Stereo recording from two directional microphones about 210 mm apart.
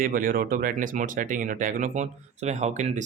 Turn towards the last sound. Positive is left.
turn(degrees=-35)  # may be behind; listen again after turning